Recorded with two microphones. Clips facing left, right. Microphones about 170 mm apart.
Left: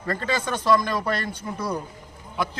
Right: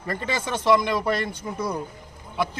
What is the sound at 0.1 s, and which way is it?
A man's voice, 20° right (ahead or behind).